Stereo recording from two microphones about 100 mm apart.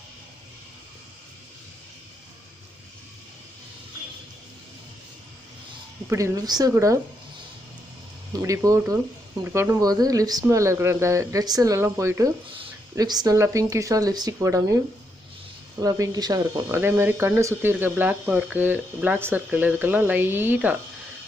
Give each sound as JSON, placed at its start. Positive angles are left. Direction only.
{"t": 6.1, "sound": "speech", "side_deg": -30}
{"t": 6.7, "sound": "speech", "side_deg": -30}
{"t": 8.3, "sound": "speech", "side_deg": -35}
{"t": 9.8, "sound": "speech", "side_deg": -40}
{"t": 13.0, "sound": "speech", "side_deg": -40}
{"t": 13.3, "sound": "speech", "side_deg": -30}
{"t": 15.8, "sound": "speech", "side_deg": -35}
{"t": 16.6, "sound": "speech", "side_deg": -25}